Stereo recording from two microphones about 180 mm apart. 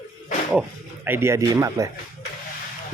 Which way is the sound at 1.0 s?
15° right (ahead or behind).